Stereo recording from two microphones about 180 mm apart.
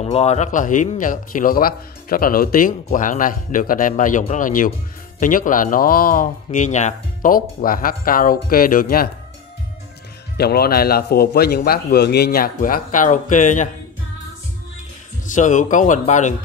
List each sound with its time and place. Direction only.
0.0 s speech: 35° left (ahead or behind); by 9.1 s 55° left (ahead or behind)
10.3 s speech: 60° left (ahead or behind); by 13.7 s 45° left (ahead or behind)
15.2 s speech: 45° left (ahead or behind)